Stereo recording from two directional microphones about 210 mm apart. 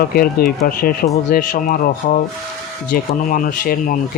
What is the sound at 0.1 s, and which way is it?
Speech, 45° left (ahead or behind).